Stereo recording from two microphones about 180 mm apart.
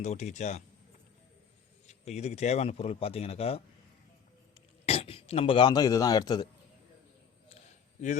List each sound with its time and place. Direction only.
0.0 s speech: 40° left (ahead or behind)
1.9 s speech: 35° left (ahead or behind)
4.9 s a man's voice: 30° left (ahead or behind)